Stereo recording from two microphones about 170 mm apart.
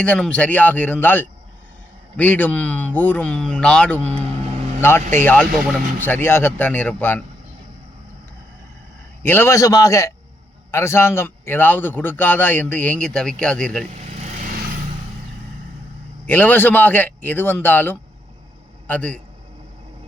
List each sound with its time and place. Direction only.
0.0 s a man's voice: 5° left (ahead or behind)
9.2 s a man's voice: 15° left (ahead or behind)
16.2 s a man's voice: 10° left (ahead or behind)